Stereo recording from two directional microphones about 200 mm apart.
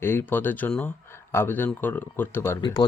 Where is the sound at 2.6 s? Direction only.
20° left (ahead or behind).